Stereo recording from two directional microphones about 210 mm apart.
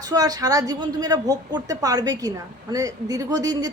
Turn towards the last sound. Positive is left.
turn(degrees=-20)  # may be behind; listen again after turning